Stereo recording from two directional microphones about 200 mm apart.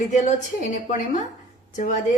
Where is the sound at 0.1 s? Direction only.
35° left (ahead or behind).